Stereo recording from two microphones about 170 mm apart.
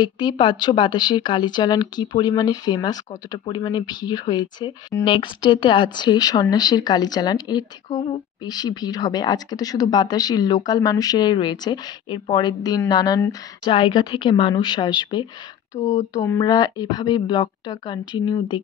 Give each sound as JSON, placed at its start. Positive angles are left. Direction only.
{"t": 0.0, "sound": "a woman's voice", "side_deg": 25}